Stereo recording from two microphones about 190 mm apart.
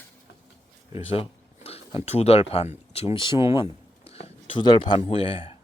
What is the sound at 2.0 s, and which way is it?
Speech, 35° left (ahead or behind).